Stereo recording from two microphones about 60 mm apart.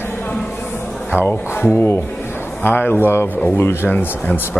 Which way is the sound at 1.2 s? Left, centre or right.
Left.